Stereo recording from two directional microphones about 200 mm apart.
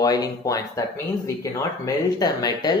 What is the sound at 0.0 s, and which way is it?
Speech, 20° left (ahead or behind).